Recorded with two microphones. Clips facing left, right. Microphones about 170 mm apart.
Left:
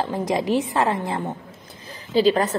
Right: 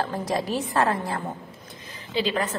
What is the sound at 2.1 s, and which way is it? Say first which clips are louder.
Speech: left 7 dB; 40° left (ahead or behind).